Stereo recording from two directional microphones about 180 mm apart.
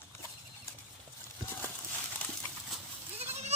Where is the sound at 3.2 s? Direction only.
35° right (ahead or behind).